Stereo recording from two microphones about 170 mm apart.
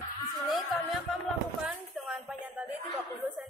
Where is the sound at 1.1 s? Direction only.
Centre (ahead or behind).